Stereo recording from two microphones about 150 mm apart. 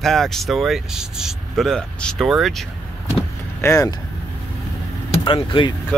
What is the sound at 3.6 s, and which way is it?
Speech, 20° left (ahead or behind).